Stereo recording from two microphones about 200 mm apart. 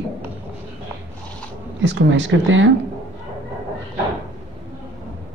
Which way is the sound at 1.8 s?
65° right (ahead or behind).